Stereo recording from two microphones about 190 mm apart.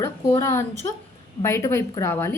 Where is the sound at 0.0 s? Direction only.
15° left (ahead or behind).